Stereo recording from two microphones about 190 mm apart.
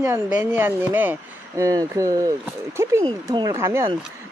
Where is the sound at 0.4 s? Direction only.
10° right (ahead or behind).